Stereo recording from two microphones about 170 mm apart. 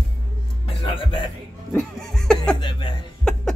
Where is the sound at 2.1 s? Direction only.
5° left (ahead or behind).